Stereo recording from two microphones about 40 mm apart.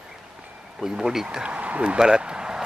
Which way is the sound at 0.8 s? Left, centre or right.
Centre.